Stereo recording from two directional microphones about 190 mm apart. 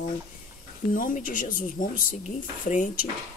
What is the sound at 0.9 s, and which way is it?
Speech, 45° left (ahead or behind).